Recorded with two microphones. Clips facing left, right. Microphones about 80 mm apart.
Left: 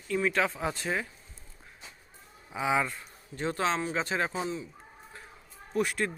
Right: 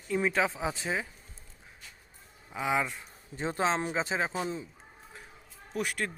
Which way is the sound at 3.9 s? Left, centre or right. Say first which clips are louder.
Even; centre.